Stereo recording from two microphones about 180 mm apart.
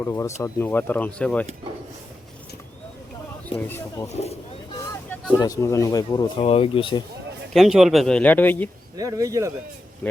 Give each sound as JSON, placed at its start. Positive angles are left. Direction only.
{"t": 0.0, "sound": "speech", "side_deg": 15}
{"t": 3.7, "sound": "speech", "side_deg": 15}
{"t": 4.1, "sound": "speech", "side_deg": 35}
{"t": 5.4, "sound": "speech", "side_deg": 20}
{"t": 6.4, "sound": "speech", "side_deg": 30}
{"t": 7.5, "sound": "speech", "side_deg": 0}
{"t": 9.0, "sound": "speech", "side_deg": -20}
{"t": 10.0, "sound": "speech", "side_deg": 5}